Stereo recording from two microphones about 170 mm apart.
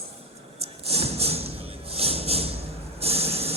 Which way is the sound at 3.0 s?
35° right (ahead or behind).